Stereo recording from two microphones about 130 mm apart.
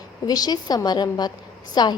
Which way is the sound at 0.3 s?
30° left (ahead or behind).